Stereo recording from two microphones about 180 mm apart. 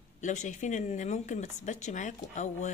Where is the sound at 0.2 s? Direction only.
40° left (ahead or behind).